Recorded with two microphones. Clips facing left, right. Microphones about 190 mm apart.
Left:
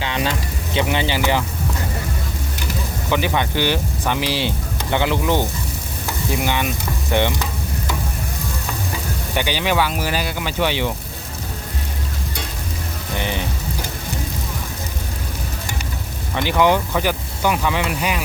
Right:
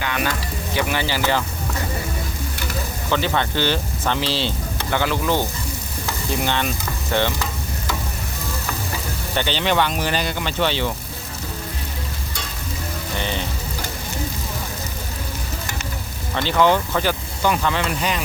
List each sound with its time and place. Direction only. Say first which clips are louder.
0.0 s speech: left 1 dB; 25° left (ahead or behind)
3.1 s speech: left 1 dB; 15° left (ahead or behind)
4.9 s sizzle: left 2 dB; 20° left (ahead or behind)
9.3 s speech: even; 10° left (ahead or behind)
13.1 s music: left 2 dB; 15° left (ahead or behind)
16.3 s speech: left 1 dB; 15° left (ahead or behind)